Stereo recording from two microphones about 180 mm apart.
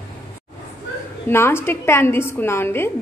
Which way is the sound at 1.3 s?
15° left (ahead or behind).